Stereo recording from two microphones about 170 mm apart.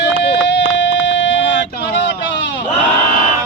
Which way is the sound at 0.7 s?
90° left.